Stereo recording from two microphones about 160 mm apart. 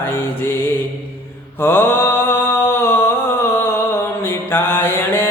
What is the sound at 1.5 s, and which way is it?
Mantra, 15° left (ahead or behind).